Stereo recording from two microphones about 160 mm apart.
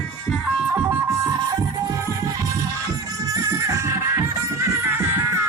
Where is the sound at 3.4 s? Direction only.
20° right (ahead or behind).